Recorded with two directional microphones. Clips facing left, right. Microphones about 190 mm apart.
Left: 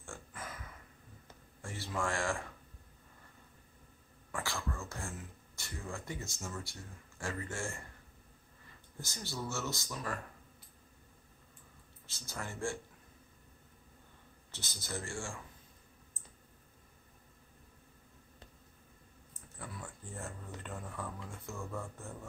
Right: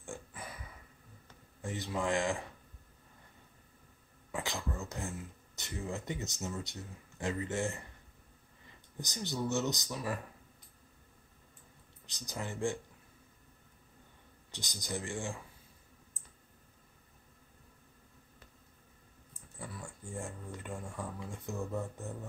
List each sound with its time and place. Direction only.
1.6 s a sound: 20° right (ahead or behind)
2.0 s speech: 20° right (ahead or behind)
4.4 s speech: 20° right (ahead or behind)
9.0 s speech: 15° right (ahead or behind)
12.1 s speech: 15° right (ahead or behind)
14.5 s speech: 15° right (ahead or behind)
19.7 s speech: 10° right (ahead or behind)